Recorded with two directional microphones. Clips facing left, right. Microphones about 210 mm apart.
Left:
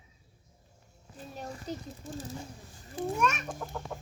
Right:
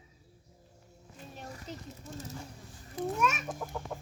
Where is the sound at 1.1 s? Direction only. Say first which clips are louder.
Left 4 dB; 35° left (ahead or behind).